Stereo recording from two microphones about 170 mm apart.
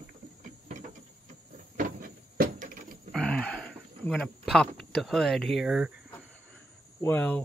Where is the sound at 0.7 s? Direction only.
45° right (ahead or behind).